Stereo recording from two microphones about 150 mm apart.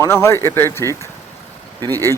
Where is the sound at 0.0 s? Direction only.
20° left (ahead or behind).